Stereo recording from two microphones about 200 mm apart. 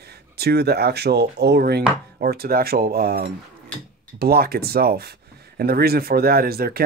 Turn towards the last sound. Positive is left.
turn(degrees=-50)  # may be behind; listen again after turning